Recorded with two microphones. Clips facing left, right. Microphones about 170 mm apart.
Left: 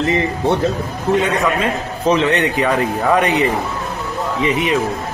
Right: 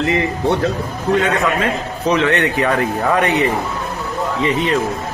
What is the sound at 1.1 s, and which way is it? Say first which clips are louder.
A man's voice: even; 20° left (ahead or behind).